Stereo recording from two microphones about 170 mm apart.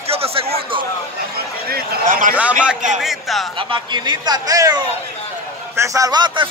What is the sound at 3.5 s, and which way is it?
A man's voice, 30° right (ahead or behind).